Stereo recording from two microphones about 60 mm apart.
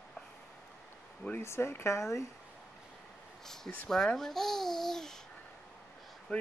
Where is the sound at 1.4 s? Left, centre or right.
Left.